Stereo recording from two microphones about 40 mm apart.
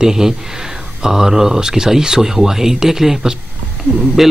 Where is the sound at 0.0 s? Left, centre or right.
Centre.